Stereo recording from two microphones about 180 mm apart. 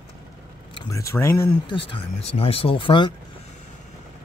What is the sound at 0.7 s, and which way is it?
Speech, 15° left (ahead or behind).